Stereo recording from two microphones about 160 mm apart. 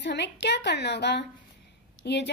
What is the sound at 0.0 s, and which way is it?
A woman's voice, 90° left.